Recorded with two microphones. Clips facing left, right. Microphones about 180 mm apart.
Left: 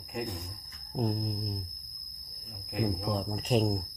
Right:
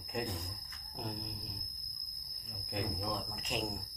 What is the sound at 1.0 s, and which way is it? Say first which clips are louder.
Speech: left 11 dB; 40° left (ahead or behind).